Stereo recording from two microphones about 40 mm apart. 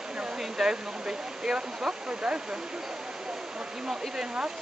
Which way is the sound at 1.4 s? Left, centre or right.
Right.